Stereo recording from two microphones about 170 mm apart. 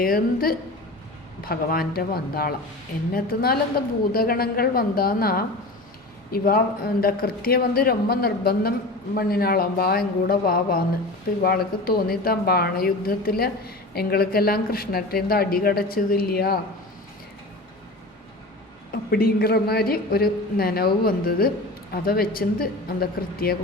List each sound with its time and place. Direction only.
0.0 s a woman's voice: 60° left (ahead or behind)
19.1 s a woman's voice: 65° left (ahead or behind)